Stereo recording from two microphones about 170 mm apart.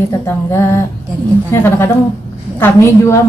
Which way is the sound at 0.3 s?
15° left (ahead or behind).